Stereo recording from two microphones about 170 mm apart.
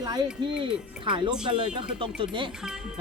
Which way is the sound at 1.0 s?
30° right (ahead or behind).